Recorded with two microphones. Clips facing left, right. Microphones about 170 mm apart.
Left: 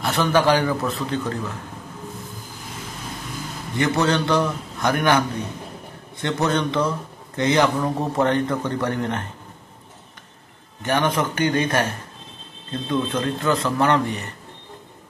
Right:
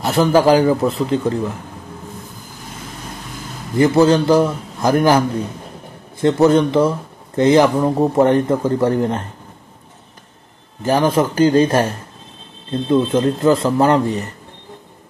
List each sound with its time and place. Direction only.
0.0 s speech: 30° right (ahead or behind)
3.7 s speech: 30° right (ahead or behind)
6.2 s speech: 30° right (ahead or behind)
10.8 s speech: 30° right (ahead or behind)